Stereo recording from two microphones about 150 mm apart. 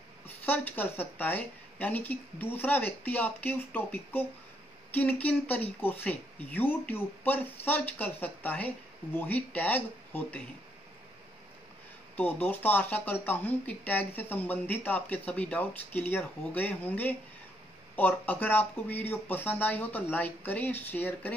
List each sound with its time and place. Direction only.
0.5 s speech: 10° left (ahead or behind)
12.2 s speech: 10° left (ahead or behind)